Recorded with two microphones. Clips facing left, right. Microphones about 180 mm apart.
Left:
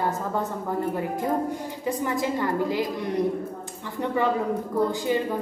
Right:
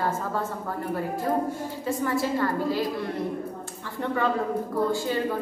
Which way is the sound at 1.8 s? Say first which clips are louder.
Even; 15° left (ahead or behind).